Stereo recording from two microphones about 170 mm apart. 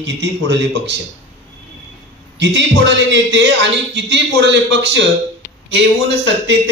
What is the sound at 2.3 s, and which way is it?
A man's voice, 90° right.